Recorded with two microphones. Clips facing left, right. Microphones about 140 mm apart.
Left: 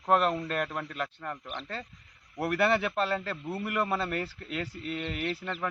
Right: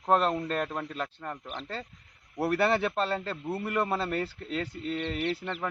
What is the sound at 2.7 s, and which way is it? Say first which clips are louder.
A man's voice: even; 30° right (ahead or behind).